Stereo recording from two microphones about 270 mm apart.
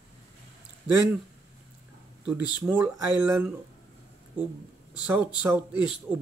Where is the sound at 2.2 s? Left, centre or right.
Centre.